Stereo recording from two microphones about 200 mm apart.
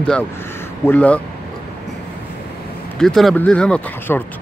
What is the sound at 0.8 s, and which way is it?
Speech, 5° left (ahead or behind).